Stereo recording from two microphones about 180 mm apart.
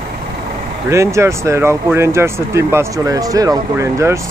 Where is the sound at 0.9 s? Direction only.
15° right (ahead or behind).